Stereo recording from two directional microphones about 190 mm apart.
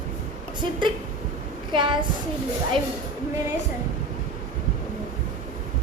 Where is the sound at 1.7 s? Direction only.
25° right (ahead or behind).